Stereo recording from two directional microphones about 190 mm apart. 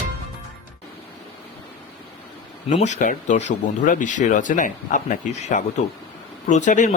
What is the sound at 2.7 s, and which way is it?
Speech, 40° left (ahead or behind).